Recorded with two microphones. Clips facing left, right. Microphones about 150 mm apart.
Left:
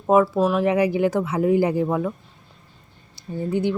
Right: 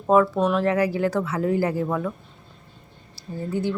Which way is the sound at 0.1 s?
5° left (ahead or behind).